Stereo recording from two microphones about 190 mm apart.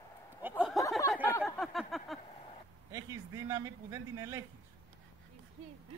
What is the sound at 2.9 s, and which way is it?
A man's voice, 15° right (ahead or behind).